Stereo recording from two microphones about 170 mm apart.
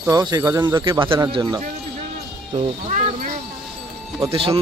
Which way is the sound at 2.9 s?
50° right (ahead or behind).